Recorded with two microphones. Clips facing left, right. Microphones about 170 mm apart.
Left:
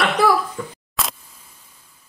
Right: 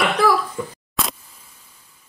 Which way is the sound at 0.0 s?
Centre (ahead or behind).